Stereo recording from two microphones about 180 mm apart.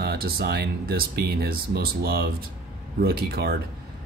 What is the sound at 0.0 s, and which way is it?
Speech, 60° right (ahead or behind).